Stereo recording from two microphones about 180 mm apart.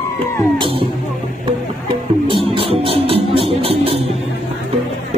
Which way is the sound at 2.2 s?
30° right (ahead or behind).